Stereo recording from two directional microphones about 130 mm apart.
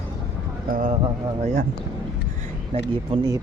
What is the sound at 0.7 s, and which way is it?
Speech, 90° right.